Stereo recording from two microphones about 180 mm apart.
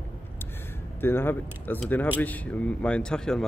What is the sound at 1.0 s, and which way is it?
Speech, 10° left (ahead or behind).